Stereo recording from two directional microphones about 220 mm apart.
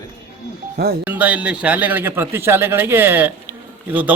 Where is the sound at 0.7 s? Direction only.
45° right (ahead or behind).